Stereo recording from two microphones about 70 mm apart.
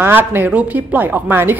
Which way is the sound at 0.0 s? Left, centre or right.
Right.